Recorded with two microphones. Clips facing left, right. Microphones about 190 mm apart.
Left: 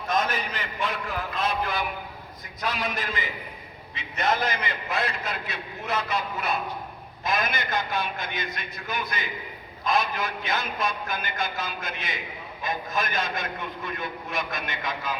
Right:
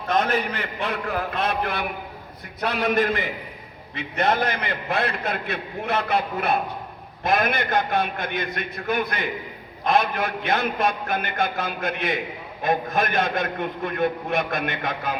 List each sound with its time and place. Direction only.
0.1 s a man's voice: 60° right (ahead or behind)